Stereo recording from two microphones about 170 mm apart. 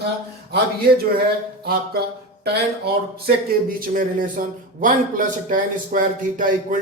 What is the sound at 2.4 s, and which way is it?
Speech, 70° right (ahead or behind).